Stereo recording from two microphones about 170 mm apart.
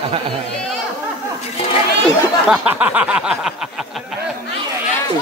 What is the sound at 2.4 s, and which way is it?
A man's voice, 5° right (ahead or behind).